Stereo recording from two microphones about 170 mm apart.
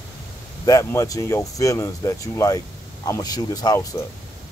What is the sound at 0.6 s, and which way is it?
Speech, 20° left (ahead or behind).